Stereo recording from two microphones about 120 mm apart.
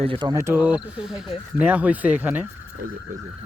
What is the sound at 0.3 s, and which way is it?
Speech, 20° right (ahead or behind).